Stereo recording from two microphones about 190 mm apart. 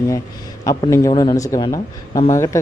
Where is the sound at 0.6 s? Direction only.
15° left (ahead or behind).